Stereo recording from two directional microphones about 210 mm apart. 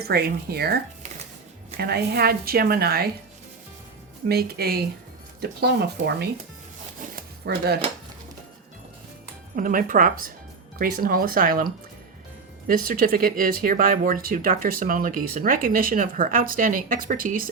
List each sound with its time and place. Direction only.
0.0 s a woman's voice: 50° right (ahead or behind)
1.8 s a woman's voice: 50° right (ahead or behind)
4.3 s a woman's voice: 50° right (ahead or behind)
7.2 s zipper: 50° right (ahead or behind)
9.6 s a woman's voice: 40° right (ahead or behind)